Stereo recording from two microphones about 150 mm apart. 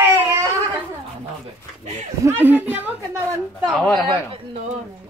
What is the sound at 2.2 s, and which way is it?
Speech, 15° right (ahead or behind).